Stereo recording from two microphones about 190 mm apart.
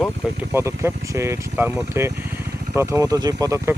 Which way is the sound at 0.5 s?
15° right (ahead or behind).